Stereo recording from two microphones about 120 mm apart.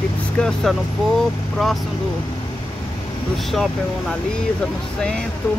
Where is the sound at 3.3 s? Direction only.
Centre (ahead or behind).